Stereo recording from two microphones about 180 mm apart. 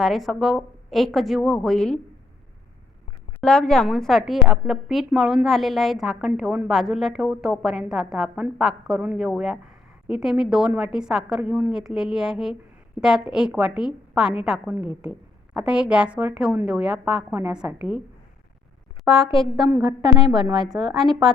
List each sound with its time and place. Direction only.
0.0 s a woman's voice: centre (ahead or behind)
3.4 s a woman's voice: 5° left (ahead or behind)
19.0 s a woman's voice: centre (ahead or behind)
19.8 s a woman's voice: 25° right (ahead or behind)
20.9 s a woman's voice: centre (ahead or behind)